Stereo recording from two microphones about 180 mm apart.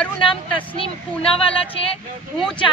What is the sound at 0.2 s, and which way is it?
Speech, 30° left (ahead or behind).